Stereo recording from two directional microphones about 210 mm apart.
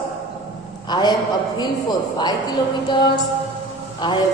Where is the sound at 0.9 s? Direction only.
20° left (ahead or behind).